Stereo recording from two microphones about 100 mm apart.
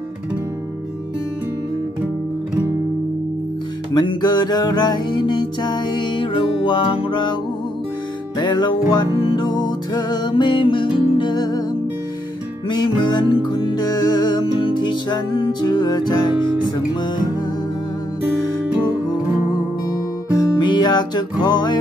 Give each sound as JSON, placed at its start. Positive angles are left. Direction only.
{"t": 3.9, "sound": "music", "side_deg": 45}
{"t": 8.4, "sound": "music", "side_deg": 45}
{"t": 12.6, "sound": "music", "side_deg": 45}
{"t": 14.4, "sound": "music", "side_deg": 55}
{"t": 19.9, "sound": "music", "side_deg": 45}